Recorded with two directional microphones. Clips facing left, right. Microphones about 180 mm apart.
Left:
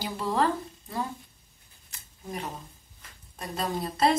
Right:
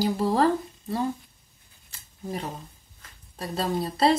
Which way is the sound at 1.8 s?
30° right (ahead or behind).